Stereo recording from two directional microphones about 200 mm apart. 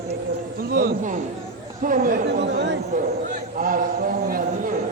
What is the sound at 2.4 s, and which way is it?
Speech, 60° right (ahead or behind).